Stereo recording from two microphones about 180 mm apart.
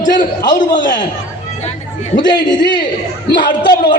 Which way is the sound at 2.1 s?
25° left (ahead or behind).